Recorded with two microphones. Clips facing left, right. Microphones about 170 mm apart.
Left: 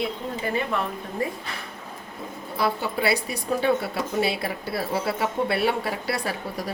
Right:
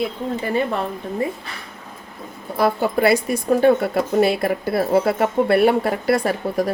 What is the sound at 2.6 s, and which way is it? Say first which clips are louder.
Speech: right 7 dB; 50° right (ahead or behind).